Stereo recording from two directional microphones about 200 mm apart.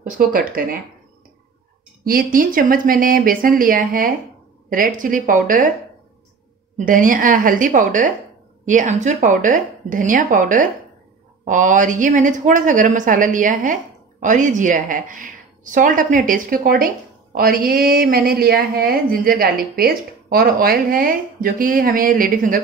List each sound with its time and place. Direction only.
0.2 s a woman's voice: 45° right (ahead or behind)
2.0 s a woman's voice: 45° right (ahead or behind)
6.8 s a woman's voice: 40° right (ahead or behind)